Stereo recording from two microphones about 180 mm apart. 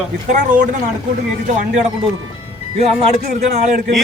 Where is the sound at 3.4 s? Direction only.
40° right (ahead or behind).